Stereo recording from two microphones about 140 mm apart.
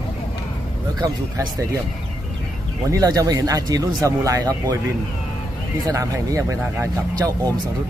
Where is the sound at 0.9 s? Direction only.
30° right (ahead or behind).